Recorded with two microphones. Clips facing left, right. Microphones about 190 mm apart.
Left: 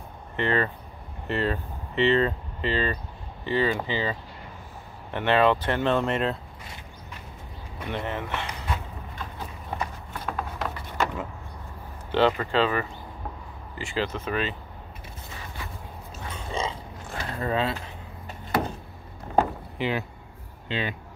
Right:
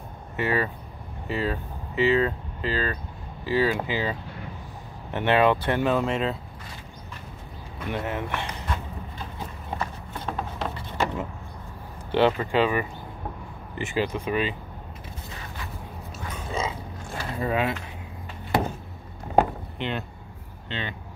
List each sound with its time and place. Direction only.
0.4 s speech: 10° right (ahead or behind)
5.9 s speech: centre (ahead or behind)
7.9 s speech: 10° right (ahead or behind)
10.2 s a sound: 25° right (ahead or behind)
12.1 s speech: 15° right (ahead or behind)
16.3 s a sound: 10° right (ahead or behind)
19.8 s speech: 5° left (ahead or behind)